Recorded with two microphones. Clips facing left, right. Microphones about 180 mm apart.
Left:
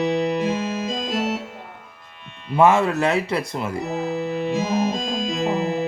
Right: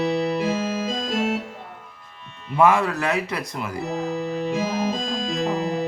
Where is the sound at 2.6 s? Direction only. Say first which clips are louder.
Left 2 dB; 25° left (ahead or behind).